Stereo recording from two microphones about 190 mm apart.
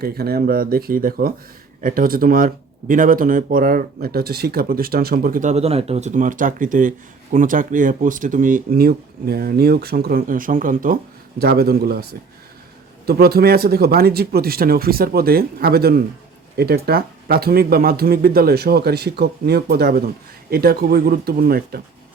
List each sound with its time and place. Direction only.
0.0 s speech: 55° right (ahead or behind)
13.1 s speech: 55° right (ahead or behind)